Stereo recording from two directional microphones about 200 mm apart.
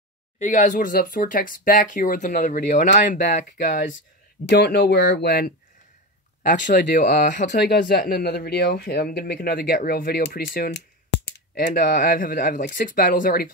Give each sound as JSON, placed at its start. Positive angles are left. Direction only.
{"t": 0.4, "sound": "speech", "side_deg": 40}
{"t": 4.5, "sound": "speech", "side_deg": 55}
{"t": 6.4, "sound": "speech", "side_deg": 40}
{"t": 7.5, "sound": "speech", "side_deg": 55}